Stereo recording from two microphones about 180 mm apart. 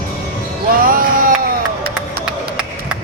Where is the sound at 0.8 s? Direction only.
50° right (ahead or behind).